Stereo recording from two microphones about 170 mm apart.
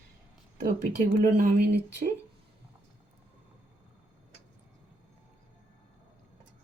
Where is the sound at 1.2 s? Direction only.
55° right (ahead or behind).